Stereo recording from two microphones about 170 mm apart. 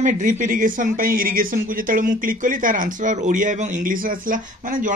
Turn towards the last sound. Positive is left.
turn(degrees=-50)  # may be behind; listen again after turning